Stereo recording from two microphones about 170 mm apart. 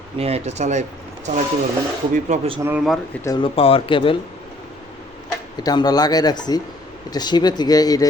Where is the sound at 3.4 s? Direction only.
30° left (ahead or behind).